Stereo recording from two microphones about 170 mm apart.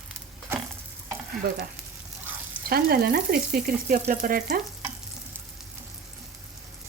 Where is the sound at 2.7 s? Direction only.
60° right (ahead or behind).